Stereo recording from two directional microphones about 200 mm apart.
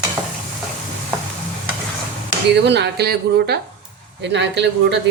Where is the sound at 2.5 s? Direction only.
60° right (ahead or behind).